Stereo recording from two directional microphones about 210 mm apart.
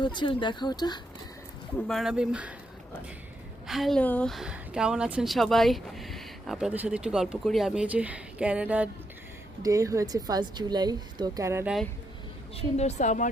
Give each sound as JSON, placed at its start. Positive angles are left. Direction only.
{"t": 0.0, "sound": "speech", "side_deg": 20}
{"t": 1.9, "sound": "a woman's voice", "side_deg": 0}
{"t": 3.7, "sound": "a woman's voice", "side_deg": 0}
{"t": 12.5, "sound": "a woman's voice", "side_deg": 30}